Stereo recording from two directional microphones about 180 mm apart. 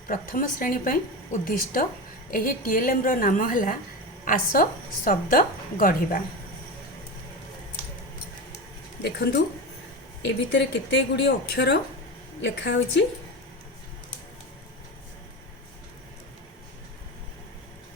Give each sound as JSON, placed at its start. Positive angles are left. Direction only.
{"t": 0.1, "sound": "a woman's voice", "side_deg": 50}
{"t": 9.0, "sound": "a woman's voice", "side_deg": 70}